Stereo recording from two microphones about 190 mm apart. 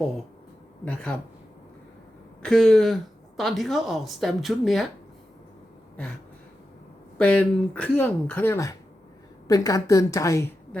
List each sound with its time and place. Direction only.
2.4 s speech: 5° left (ahead or behind)
7.2 s speech: 5° left (ahead or behind)